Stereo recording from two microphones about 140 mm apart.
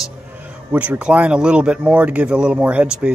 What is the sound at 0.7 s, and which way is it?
Speech, 10° right (ahead or behind).